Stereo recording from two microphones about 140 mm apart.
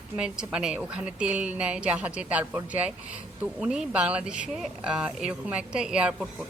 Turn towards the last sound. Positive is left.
turn(degrees=-5)  # may be behind; listen again after turning